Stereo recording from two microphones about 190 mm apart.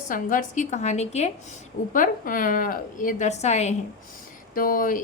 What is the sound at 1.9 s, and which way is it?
A woman's voice, 45° left (ahead or behind).